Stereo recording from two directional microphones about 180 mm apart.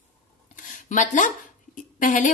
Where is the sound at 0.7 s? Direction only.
45° left (ahead or behind).